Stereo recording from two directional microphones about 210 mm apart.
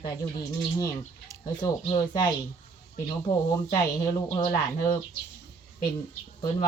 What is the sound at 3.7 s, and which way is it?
Speech, 15° left (ahead or behind).